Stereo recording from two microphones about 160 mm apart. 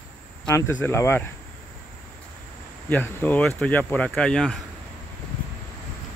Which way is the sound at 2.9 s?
10° left (ahead or behind).